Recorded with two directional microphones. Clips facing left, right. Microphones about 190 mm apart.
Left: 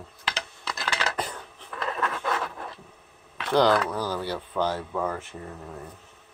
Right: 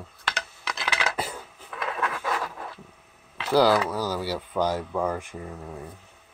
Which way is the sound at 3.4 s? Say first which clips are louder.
Right 1 dB; 5° right (ahead or behind).